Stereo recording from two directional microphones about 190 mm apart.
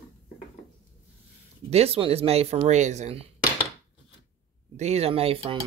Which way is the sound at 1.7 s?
30° right (ahead or behind).